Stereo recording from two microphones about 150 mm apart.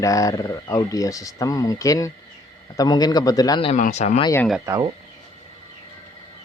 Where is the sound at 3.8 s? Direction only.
50° left (ahead or behind).